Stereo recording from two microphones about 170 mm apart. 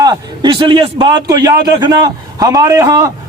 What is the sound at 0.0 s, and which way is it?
A man's voice, 25° right (ahead or behind).